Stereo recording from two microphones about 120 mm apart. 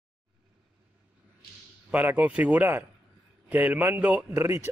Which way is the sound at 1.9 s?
15° right (ahead or behind).